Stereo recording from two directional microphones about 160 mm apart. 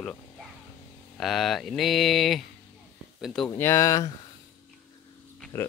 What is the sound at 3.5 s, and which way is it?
Speech, 15° left (ahead or behind).